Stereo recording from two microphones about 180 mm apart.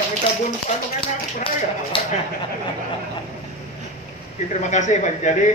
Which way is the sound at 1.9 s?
30° left (ahead or behind).